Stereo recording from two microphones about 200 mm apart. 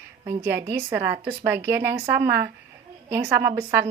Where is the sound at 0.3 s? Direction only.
15° right (ahead or behind).